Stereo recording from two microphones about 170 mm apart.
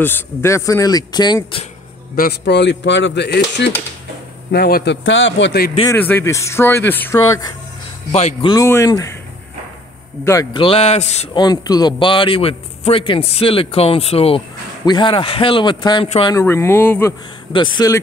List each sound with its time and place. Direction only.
0.0 s a man's voice: 15° left (ahead or behind)
2.1 s speech: 75° left (ahead or behind)
4.5 s a man's voice: 65° left (ahead or behind); by 5.7 s 80° left
5.9 s speech: 10° left (ahead or behind)
8.1 s a man's voice: 40° left (ahead or behind)
8.5 s a man's voice: 15° left (ahead or behind)
10.2 s speech: 20° left (ahead or behind)
10.6 s a man's voice: 35° left (ahead or behind)
11.3 s a man's voice: 25° left (ahead or behind)
16.3 s speech: 15° left (ahead or behind)
17.5 s a man's voice: 30° left (ahead or behind)